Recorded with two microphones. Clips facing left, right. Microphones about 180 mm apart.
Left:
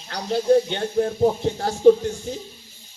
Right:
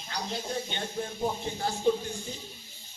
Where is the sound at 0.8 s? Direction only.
55° left (ahead or behind).